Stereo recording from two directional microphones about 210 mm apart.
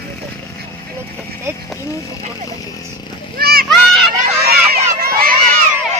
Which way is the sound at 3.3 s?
45° right (ahead or behind).